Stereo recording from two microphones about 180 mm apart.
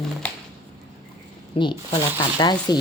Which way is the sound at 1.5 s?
25° left (ahead or behind).